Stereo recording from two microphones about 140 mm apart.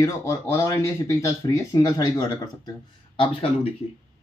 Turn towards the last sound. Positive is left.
turn(degrees=40)  # may be behind; listen again after turning